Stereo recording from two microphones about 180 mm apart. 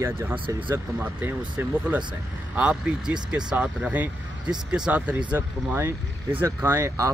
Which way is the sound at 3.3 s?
5° right (ahead or behind).